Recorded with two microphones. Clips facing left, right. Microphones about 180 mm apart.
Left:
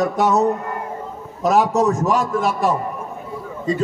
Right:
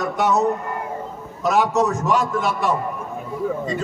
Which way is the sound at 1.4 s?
40° left (ahead or behind).